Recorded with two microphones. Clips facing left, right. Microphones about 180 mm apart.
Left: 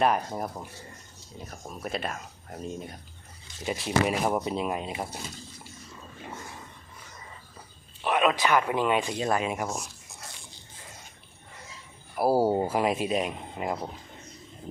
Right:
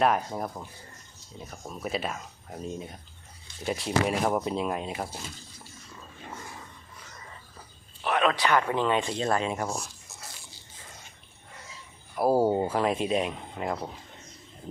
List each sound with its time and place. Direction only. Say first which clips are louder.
0.0 s speech: even; centre (ahead or behind)
8.0 s speech: left 1 dB; 15° left (ahead or behind)
12.1 s speech: even; 10° left (ahead or behind)